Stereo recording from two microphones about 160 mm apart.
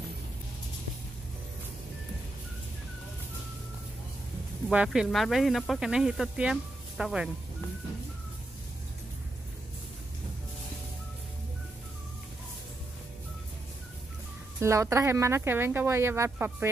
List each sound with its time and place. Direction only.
4.6 s speech: 5° right (ahead or behind)
14.6 s speech: 20° right (ahead or behind)